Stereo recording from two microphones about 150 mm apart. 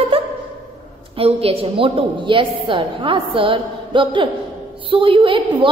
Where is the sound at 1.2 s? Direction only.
40° right (ahead or behind).